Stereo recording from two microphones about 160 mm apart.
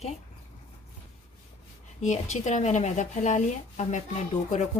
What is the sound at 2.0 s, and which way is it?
Speech, 45° left (ahead or behind).